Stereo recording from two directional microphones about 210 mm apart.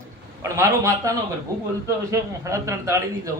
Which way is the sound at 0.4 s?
15° right (ahead or behind).